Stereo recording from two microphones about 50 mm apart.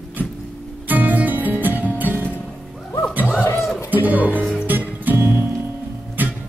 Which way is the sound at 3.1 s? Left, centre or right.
Right.